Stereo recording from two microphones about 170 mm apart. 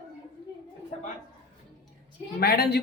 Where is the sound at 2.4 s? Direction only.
70° left (ahead or behind).